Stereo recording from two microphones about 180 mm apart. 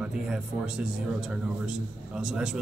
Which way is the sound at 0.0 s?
5° right (ahead or behind).